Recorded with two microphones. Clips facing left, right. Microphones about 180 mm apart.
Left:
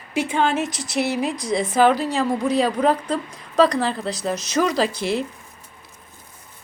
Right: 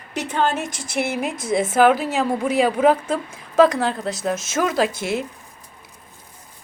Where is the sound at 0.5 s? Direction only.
50° right (ahead or behind).